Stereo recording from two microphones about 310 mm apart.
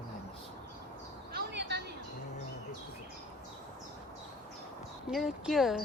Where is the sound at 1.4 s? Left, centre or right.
Right.